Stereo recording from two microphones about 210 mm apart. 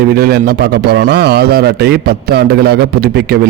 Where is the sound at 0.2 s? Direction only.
50° right (ahead or behind).